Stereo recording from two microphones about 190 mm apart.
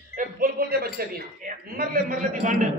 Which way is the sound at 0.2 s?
50° right (ahead or behind).